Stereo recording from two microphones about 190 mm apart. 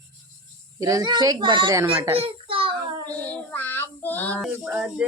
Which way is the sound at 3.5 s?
10° left (ahead or behind).